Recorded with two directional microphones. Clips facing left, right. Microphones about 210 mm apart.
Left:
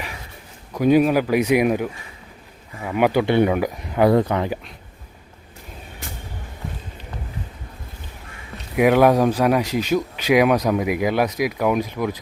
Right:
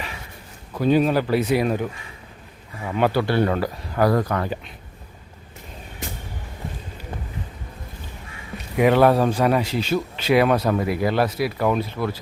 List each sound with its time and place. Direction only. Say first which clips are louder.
0.7 s speech: left 3 dB; 10° left (ahead or behind)
8.7 s speech: left 1 dB; 10° left (ahead or behind)